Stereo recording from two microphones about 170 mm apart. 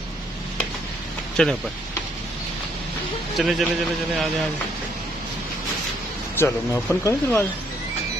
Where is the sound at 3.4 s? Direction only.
Centre (ahead or behind).